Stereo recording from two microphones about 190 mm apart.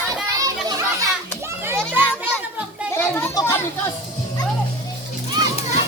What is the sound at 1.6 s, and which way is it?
Children playing, 10° right (ahead or behind).